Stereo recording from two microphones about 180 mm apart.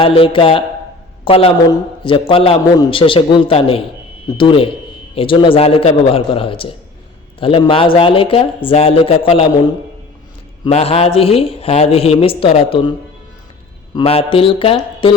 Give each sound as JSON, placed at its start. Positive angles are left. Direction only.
{"t": 0.0, "sound": "a man's voice", "side_deg": 30}
{"t": 10.7, "sound": "speech", "side_deg": 35}
{"t": 13.9, "sound": "speech", "side_deg": 30}